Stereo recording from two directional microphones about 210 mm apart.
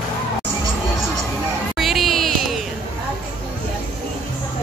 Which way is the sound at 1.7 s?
Centre (ahead or behind).